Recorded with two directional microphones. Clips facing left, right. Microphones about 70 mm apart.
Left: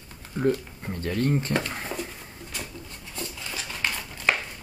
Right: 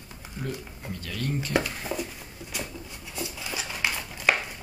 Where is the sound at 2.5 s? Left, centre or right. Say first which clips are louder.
Right 2 dB; centre.